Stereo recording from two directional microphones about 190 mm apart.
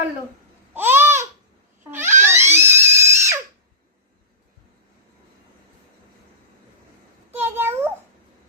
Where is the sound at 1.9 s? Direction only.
10° right (ahead or behind).